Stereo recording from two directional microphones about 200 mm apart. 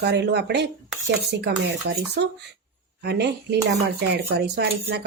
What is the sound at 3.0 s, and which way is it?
A woman's voice, 55° right (ahead or behind).